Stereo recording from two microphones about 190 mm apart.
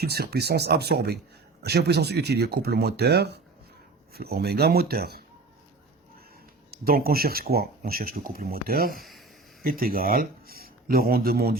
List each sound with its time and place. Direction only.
0.0 s speech: 55° right (ahead or behind)
6.7 s speech: 50° right (ahead or behind)
9.0 s a sound: centre (ahead or behind)
9.6 s speech: 50° right (ahead or behind)